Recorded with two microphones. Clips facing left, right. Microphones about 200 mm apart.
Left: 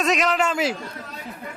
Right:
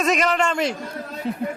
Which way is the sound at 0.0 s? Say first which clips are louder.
Right 1 dB; centre (ahead or behind).